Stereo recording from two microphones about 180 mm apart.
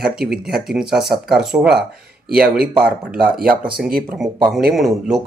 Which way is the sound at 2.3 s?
55° right (ahead or behind).